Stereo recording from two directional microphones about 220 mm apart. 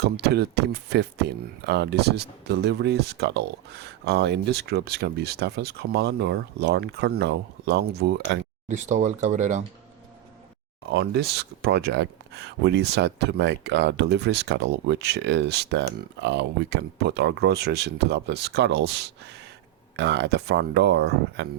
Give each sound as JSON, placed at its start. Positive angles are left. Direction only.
{"t": 0.0, "sound": "speech", "side_deg": -50}
{"t": 8.6, "sound": "speech", "side_deg": -35}
{"t": 10.8, "sound": "speech", "side_deg": -45}